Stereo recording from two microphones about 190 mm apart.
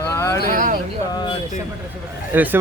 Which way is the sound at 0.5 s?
45° right (ahead or behind).